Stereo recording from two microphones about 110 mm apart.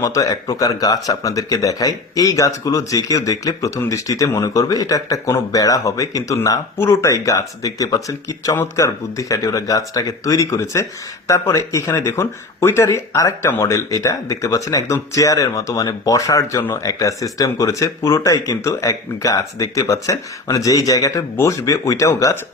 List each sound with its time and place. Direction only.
0.0 s speech: 30° left (ahead or behind)